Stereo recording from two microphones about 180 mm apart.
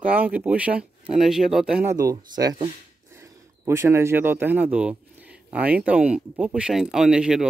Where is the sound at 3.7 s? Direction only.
15° right (ahead or behind).